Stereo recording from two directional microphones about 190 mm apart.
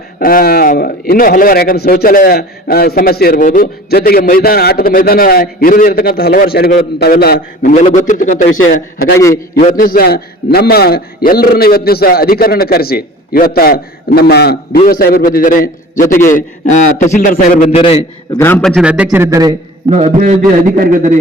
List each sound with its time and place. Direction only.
0.2 s a man's voice: 50° left (ahead or behind)
7.7 s a man's voice: 35° left (ahead or behind)
9.1 s a man's voice: 15° left (ahead or behind)
9.7 s a man's voice: 50° left (ahead or behind)
17.7 s a man's voice: 30° left (ahead or behind)
18.3 s a man's voice: 10° left (ahead or behind); by 19.5 s 20° right (ahead or behind)
20.7 s speech: 45° right (ahead or behind)